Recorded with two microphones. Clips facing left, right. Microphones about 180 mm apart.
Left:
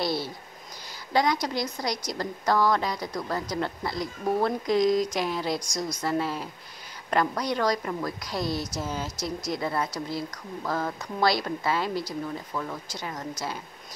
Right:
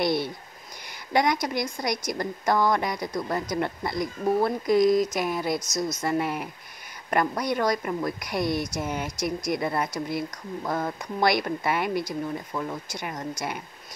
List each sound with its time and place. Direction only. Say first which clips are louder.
0.0 s a woman's voice: right 4 dB; 20° right (ahead or behind)